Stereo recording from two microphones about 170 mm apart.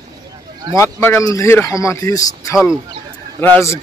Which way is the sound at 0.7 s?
15° left (ahead or behind).